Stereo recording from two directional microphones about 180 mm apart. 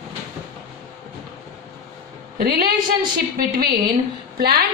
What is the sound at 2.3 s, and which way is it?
Speech, 55° right (ahead or behind).